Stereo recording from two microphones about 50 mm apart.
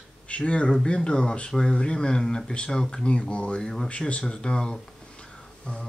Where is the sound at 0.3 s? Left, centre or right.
Left.